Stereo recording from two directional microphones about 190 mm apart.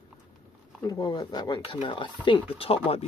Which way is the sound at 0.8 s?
20° left (ahead or behind).